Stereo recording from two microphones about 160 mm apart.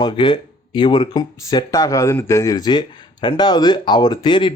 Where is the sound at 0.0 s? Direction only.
30° left (ahead or behind).